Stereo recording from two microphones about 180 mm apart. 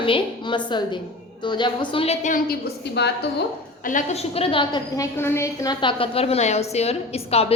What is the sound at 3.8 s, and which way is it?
A woman's voice, 45° left (ahead or behind).